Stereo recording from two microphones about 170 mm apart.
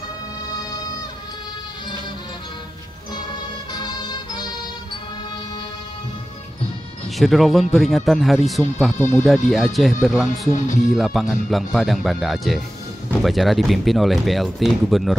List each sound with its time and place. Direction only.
3.7 s music: 25° left (ahead or behind)
7.2 s speech: centre (ahead or behind)
8.9 s speech: 15° left (ahead or behind)
9.2 s speech: centre (ahead or behind)